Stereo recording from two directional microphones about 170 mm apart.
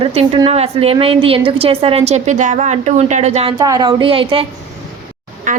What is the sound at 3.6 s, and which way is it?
Speech, 25° right (ahead or behind).